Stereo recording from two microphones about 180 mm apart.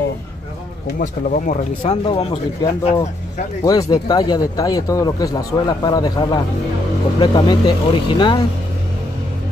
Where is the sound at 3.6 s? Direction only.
20° left (ahead or behind).